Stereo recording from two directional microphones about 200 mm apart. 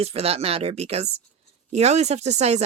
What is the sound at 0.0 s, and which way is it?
A woman's voice, 30° right (ahead or behind).